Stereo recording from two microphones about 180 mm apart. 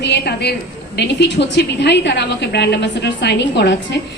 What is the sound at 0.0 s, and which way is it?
A woman's voice, 65° left (ahead or behind).